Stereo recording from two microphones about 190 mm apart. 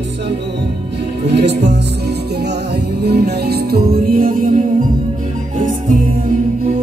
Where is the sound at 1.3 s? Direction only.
60° right (ahead or behind).